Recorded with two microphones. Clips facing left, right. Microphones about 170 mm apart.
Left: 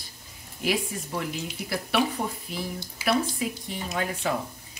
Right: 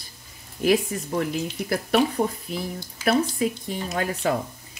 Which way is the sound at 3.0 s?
45° right (ahead or behind).